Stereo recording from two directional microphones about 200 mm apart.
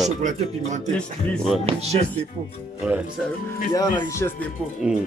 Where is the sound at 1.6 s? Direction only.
30° right (ahead or behind).